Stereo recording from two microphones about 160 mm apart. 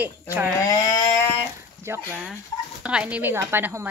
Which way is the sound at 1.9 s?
15° right (ahead or behind).